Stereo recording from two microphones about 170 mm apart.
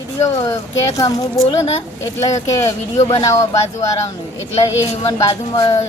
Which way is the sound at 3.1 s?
20° left (ahead or behind).